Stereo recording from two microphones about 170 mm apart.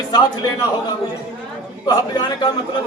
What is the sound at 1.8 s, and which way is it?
Speech, 25° left (ahead or behind).